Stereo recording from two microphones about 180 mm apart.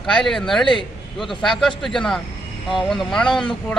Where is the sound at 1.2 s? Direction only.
Centre (ahead or behind).